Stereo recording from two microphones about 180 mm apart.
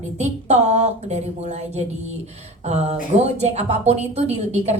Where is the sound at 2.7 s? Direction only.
35° right (ahead or behind).